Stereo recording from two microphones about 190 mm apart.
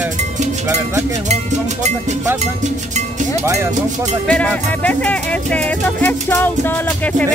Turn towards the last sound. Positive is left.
turn(degrees=10)  # may be behind; listen again after turning